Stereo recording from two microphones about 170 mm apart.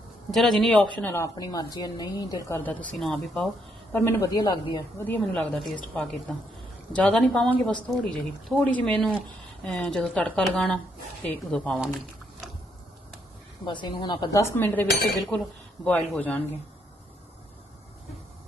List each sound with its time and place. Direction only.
0.3 s speech: centre (ahead or behind)
0.9 s a woman's voice: 15° left (ahead or behind)
2.9 s speech: centre (ahead or behind)
3.9 s speech: 15° left (ahead or behind)
5.0 s speech: 10° left (ahead or behind)
13.7 s a woman's voice: 25° left (ahead or behind); by 16.4 s 10° left (ahead or behind)